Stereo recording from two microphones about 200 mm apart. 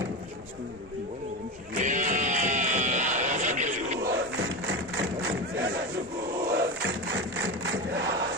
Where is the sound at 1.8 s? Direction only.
40° right (ahead or behind).